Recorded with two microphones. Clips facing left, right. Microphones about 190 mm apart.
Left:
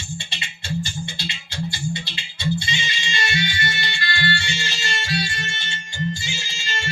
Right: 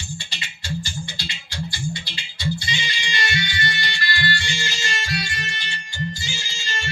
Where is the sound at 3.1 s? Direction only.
25° left (ahead or behind).